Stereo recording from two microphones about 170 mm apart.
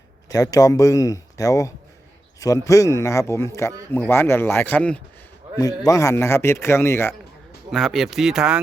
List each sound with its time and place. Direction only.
0.3 s speech: 20° left (ahead or behind)
5.5 s speech: 20° left (ahead or behind)
7.7 s speech: centre (ahead or behind)